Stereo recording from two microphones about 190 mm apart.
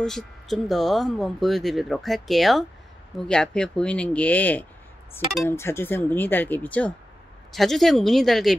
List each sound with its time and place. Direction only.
0.0 s speech: centre (ahead or behind)
5.4 s chink: 15° left (ahead or behind)
7.5 s speech: centre (ahead or behind)